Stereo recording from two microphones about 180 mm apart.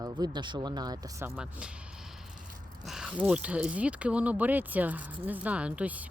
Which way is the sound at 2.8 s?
Centre (ahead or behind).